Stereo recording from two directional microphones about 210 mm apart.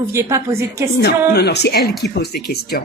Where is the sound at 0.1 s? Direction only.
15° right (ahead or behind).